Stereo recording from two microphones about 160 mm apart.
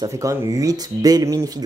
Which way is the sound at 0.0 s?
20° right (ahead or behind).